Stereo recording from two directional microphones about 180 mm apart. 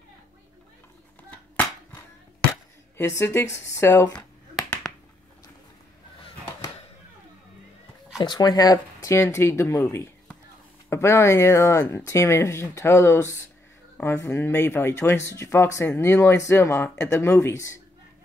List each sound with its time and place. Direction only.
1.3 s hands: 10° left (ahead or behind)
3.2 s speech: 15° left (ahead or behind)
8.2 s speech: 25° left (ahead or behind)